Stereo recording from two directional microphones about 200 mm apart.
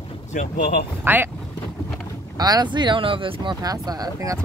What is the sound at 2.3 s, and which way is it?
Speech, 20° right (ahead or behind).